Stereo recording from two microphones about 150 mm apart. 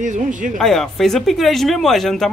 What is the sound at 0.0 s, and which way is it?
Speech, 55° right (ahead or behind).